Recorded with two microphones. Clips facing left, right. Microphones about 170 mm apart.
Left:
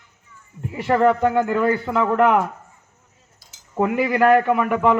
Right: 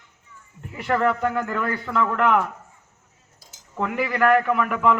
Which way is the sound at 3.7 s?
35° left (ahead or behind).